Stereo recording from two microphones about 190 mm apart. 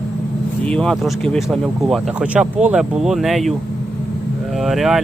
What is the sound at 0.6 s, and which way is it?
Speech, 5° left (ahead or behind).